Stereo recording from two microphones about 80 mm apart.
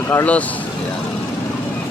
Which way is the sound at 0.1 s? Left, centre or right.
Left.